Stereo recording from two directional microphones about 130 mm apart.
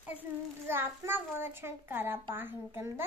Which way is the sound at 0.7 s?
15° right (ahead or behind).